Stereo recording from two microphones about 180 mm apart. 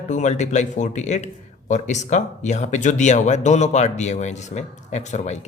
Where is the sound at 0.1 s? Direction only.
40° left (ahead or behind).